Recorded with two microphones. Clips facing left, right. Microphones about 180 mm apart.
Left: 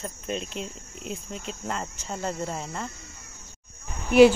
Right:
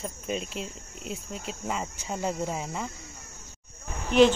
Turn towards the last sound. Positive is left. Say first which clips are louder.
# left 4 dB
turn(degrees=10)  # may be behind; listen again after turning